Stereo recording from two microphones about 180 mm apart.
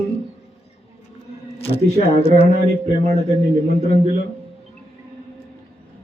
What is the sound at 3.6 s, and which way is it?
Speech, 35° left (ahead or behind).